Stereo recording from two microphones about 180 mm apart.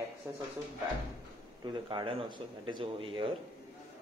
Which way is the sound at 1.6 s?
25° right (ahead or behind).